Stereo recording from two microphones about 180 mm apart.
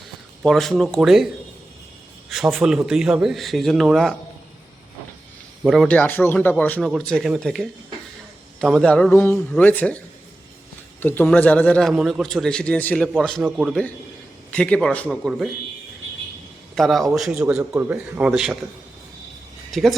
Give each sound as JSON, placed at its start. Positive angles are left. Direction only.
{"t": 0.4, "sound": "a man's voice", "side_deg": 0}
{"t": 2.3, "sound": "a man's voice", "side_deg": 0}
{"t": 5.6, "sound": "a man's voice", "side_deg": 0}
{"t": 11.0, "sound": "a man's voice", "side_deg": 10}
{"t": 14.5, "sound": "a man's voice", "side_deg": 5}
{"t": 16.7, "sound": "a man's voice", "side_deg": 0}
{"t": 19.7, "sound": "a man's voice", "side_deg": 0}